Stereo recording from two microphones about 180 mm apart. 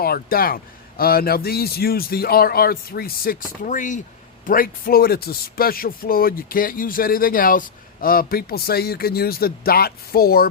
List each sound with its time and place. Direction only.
0.0 s a man's voice: 55° left (ahead or behind)